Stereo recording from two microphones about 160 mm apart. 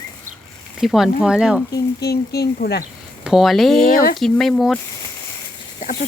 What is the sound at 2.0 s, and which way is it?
Speech, 80° left.